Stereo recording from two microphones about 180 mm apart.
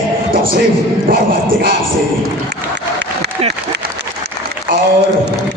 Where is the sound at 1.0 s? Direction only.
55° right (ahead or behind).